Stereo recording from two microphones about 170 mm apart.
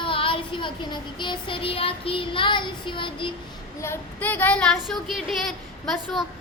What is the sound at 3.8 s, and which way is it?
A woman's voice, 15° left (ahead or behind).